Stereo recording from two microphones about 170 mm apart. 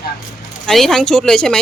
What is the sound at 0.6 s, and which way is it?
Speech, centre (ahead or behind).